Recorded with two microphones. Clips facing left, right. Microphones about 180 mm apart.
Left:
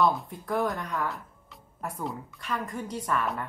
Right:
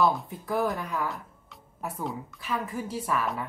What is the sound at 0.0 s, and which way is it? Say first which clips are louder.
A woman's voice: even; 5° right (ahead or behind).